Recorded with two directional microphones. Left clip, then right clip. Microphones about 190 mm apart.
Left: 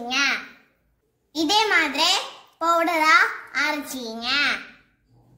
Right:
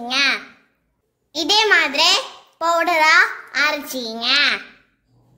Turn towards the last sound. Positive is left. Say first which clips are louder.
# right 5 dB
turn(degrees=-55)  # may be behind; listen again after turning